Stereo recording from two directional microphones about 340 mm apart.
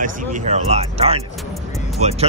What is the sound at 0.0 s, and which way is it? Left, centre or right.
Speech, right.